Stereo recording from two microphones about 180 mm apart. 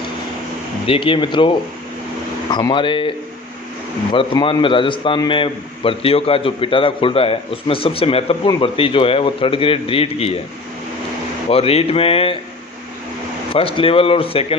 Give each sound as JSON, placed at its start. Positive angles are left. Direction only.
{"t": 0.9, "sound": "speech", "side_deg": 30}
{"t": 4.1, "sound": "a man's voice", "side_deg": 30}
{"t": 11.4, "sound": "a man's voice", "side_deg": 35}
{"t": 13.5, "sound": "a man's voice", "side_deg": 30}